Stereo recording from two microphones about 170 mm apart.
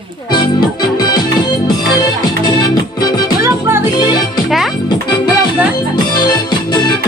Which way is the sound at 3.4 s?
15° right (ahead or behind).